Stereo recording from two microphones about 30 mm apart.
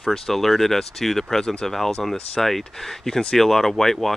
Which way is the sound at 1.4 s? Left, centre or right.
Left.